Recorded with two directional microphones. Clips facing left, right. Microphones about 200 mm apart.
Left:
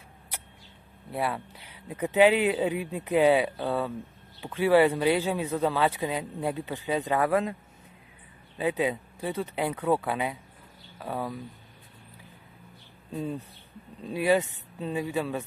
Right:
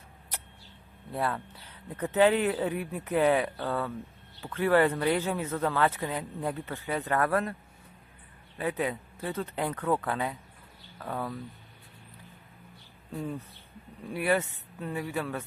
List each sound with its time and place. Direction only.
1.1 s speech: 10° left (ahead or behind)
8.5 s speech: 15° left (ahead or behind)
13.1 s speech: 20° left (ahead or behind)